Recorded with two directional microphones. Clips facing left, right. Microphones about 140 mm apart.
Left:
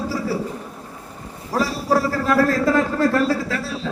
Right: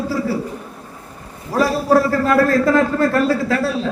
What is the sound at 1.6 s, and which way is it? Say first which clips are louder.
A man's voice: right 5 dB; 55° right (ahead or behind).